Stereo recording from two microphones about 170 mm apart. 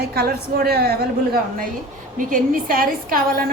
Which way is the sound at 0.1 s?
65° right (ahead or behind).